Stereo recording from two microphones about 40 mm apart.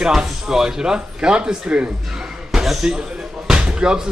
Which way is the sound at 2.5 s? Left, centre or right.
Centre.